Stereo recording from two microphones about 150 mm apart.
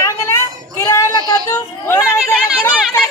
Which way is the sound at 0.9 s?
20° left (ahead or behind).